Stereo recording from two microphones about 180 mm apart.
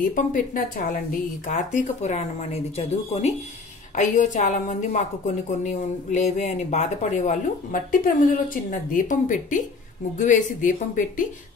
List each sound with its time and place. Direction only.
0.1 s a woman's voice: 50° left (ahead or behind)